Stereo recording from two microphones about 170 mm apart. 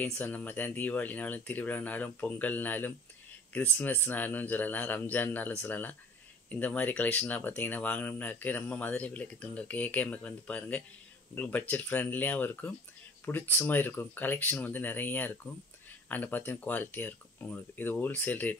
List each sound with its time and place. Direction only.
0.0 s speech: 10° left (ahead or behind)